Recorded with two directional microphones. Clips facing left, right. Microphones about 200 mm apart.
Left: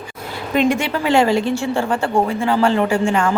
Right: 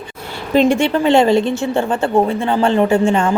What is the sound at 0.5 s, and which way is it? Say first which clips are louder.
A woman's voice: right 4 dB; 30° right (ahead or behind).